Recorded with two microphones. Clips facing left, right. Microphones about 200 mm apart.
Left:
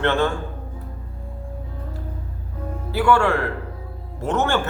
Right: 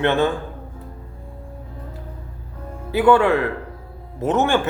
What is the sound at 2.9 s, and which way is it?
A man's voice, 20° right (ahead or behind).